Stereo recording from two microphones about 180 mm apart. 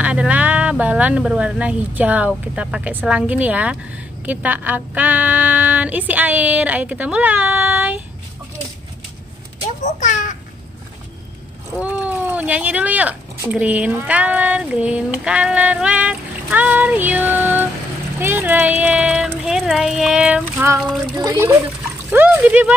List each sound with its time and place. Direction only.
0.0 s speech: 5° right (ahead or behind)
9.9 s a sound: 45° left (ahead or behind)
11.8 s a child's voice: 10° right (ahead or behind)
22.1 s speech: 10° right (ahead or behind)